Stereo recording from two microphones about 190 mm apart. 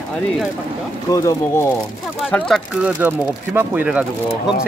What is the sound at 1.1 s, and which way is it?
Speech, 20° left (ahead or behind).